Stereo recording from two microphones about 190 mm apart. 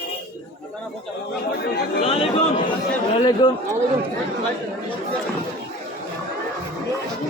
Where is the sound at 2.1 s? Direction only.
30° left (ahead or behind).